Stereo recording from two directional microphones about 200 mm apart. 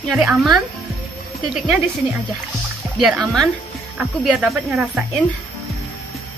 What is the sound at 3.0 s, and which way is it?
A woman's voice, centre (ahead or behind).